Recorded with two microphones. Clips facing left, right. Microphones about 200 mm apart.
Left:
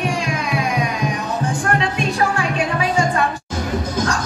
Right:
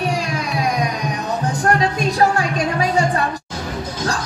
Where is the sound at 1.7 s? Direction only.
40° right (ahead or behind).